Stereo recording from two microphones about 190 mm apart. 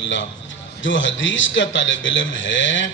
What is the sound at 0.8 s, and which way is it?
A man's voice, 80° left.